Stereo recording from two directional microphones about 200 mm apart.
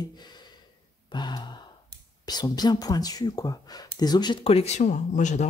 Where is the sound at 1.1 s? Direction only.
20° left (ahead or behind); by 5.5 s 35° left (ahead or behind).